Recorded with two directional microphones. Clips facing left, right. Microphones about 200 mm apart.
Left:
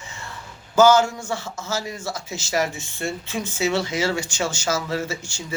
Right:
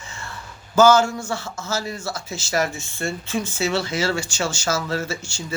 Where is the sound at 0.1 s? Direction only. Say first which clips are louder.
Right 2 dB; 20° left (ahead or behind).